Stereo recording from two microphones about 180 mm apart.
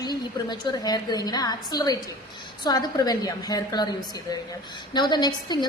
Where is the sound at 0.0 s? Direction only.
20° left (ahead or behind).